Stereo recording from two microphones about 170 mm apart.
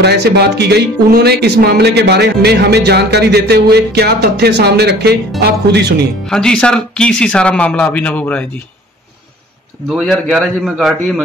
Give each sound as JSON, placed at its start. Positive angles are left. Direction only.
{"t": 0.0, "sound": "speech", "side_deg": -75}
{"t": 6.3, "sound": "speech", "side_deg": 5}
{"t": 9.8, "sound": "speech", "side_deg": 0}